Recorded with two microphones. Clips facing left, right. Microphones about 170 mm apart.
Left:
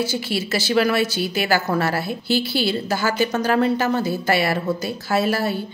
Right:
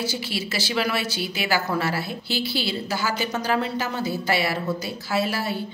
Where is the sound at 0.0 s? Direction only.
50° left (ahead or behind).